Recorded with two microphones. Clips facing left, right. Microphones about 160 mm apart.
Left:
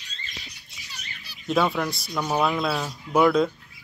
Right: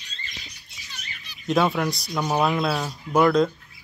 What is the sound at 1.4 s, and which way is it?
Speech, centre (ahead or behind).